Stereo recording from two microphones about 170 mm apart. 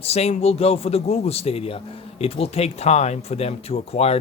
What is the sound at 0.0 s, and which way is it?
A man's voice, 40° left (ahead or behind).